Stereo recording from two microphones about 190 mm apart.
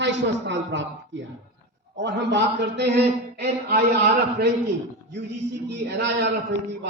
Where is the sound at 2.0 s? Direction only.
70° right (ahead or behind).